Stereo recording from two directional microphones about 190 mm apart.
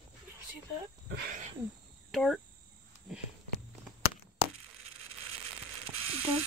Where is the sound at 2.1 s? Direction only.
Centre (ahead or behind).